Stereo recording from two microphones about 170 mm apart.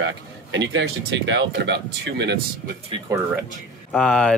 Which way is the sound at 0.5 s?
90° right.